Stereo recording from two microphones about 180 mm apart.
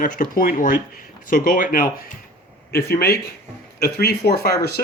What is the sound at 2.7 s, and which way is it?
Speech, 60° left (ahead or behind).